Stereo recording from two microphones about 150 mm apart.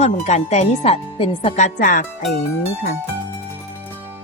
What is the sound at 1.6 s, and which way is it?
Speech, 60° left (ahead or behind).